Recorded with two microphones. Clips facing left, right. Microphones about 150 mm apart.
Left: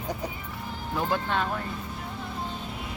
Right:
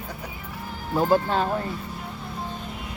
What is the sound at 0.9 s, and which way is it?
Speech, 40° right (ahead or behind).